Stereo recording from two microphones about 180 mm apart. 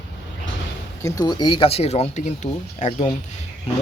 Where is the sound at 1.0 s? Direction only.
20° left (ahead or behind); by 3.1 s 40° left (ahead or behind).